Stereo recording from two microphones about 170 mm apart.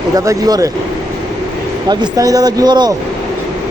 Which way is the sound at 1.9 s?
20° right (ahead or behind).